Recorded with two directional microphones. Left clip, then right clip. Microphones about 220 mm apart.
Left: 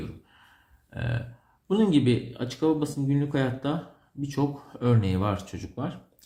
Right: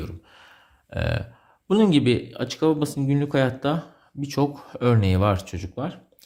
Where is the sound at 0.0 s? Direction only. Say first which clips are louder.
Right 3 dB; 45° right (ahead or behind).